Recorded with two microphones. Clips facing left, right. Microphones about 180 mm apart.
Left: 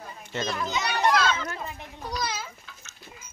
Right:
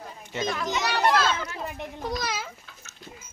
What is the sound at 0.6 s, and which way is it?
Speech, 75° right (ahead or behind).